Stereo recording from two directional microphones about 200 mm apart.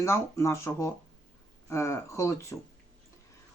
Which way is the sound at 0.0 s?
15° left (ahead or behind).